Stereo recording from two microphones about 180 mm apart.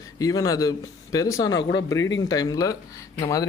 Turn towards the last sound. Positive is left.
turn(degrees=15)  # may be behind; listen again after turning